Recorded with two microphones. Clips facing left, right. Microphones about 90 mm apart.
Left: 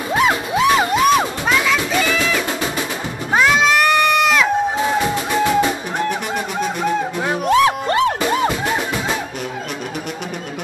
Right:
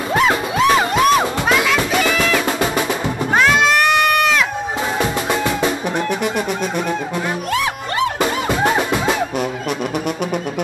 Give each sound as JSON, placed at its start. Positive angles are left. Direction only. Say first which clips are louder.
{"t": 0.1, "sound": "music", "louder": "even", "side_deg": 5}
{"t": 3.3, "sound": "crowd", "louder": "even", "side_deg": 0}
{"t": 7.4, "sound": "music", "louder": "left 6 dB", "side_deg": 25}